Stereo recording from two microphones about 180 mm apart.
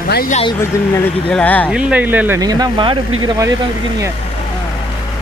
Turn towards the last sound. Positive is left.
turn(degrees=-20)  # may be behind; listen again after turning